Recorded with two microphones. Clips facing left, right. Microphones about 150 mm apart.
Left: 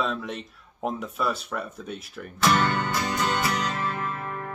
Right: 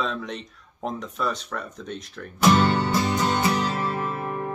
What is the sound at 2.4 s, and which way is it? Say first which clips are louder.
Music: right 4 dB; 30° right (ahead or behind).